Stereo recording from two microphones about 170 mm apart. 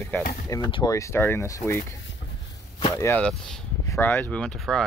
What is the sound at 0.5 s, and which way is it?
Speech, 25° left (ahead or behind).